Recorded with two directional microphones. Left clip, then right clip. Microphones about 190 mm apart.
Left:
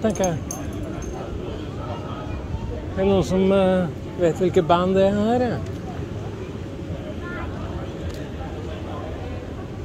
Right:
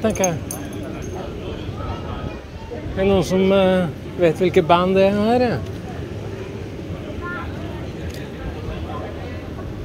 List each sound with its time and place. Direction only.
0.0 s speech: 10° left (ahead or behind)
3.0 s speech: 5° left (ahead or behind)